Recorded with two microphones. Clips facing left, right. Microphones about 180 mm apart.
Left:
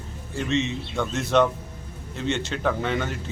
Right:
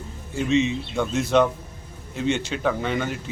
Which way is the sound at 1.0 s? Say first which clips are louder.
Right 1 dB; centre (ahead or behind).